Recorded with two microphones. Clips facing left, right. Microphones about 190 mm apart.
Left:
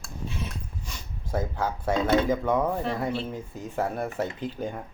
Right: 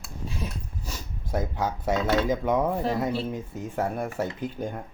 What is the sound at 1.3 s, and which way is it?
Speech, 15° right (ahead or behind).